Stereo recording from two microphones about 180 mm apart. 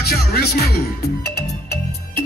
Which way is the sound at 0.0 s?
60° left (ahead or behind).